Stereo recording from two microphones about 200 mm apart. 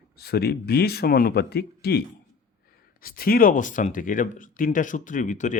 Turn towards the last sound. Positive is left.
turn(degrees=40)  # may be behind; listen again after turning